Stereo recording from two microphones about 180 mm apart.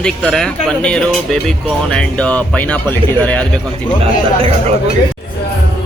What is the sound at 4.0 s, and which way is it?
Speech, 30° right (ahead or behind).